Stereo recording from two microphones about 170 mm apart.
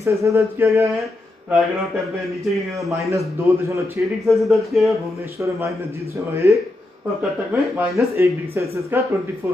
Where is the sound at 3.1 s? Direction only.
20° right (ahead or behind).